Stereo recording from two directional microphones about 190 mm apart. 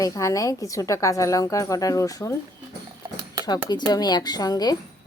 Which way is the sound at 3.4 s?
20° left (ahead or behind).